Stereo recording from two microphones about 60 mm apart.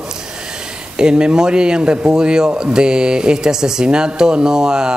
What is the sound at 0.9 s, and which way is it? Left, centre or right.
A man's voice, centre.